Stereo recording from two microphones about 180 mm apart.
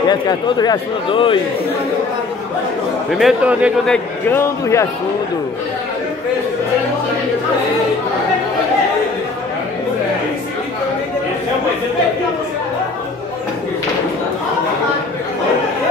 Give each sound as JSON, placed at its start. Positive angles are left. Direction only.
{"t": 0.1, "sound": "a man's voice", "side_deg": 25}
{"t": 3.1, "sound": "a man's voice", "side_deg": 0}
{"t": 3.8, "sound": "a man's voice", "side_deg": 10}